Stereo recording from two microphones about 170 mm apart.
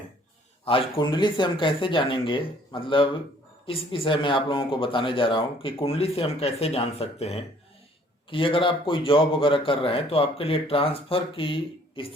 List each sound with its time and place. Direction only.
0.6 s speech: 30° left (ahead or behind)